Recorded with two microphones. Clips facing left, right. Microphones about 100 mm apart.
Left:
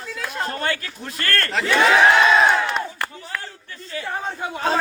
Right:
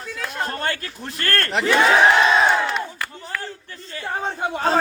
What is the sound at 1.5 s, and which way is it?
Speech, 20° right (ahead or behind).